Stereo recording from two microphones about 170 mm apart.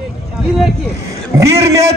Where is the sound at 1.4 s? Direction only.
20° right (ahead or behind).